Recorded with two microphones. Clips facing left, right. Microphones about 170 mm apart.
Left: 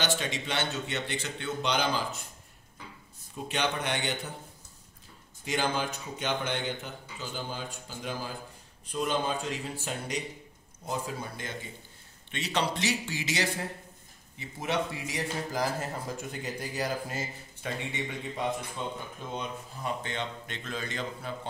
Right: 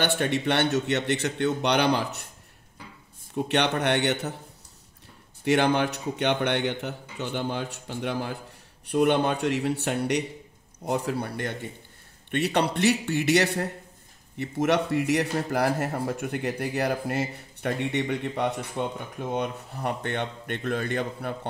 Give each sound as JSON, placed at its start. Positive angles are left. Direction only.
{"t": 0.0, "sound": "speech", "side_deg": -60}
{"t": 3.3, "sound": "speech", "side_deg": -65}
{"t": 5.4, "sound": "speech", "side_deg": -65}